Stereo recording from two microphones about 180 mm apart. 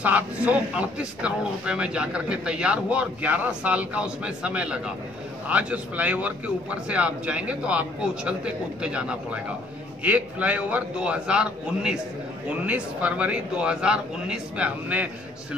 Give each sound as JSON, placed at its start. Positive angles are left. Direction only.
{"t": 0.0, "sound": "speech", "side_deg": -10}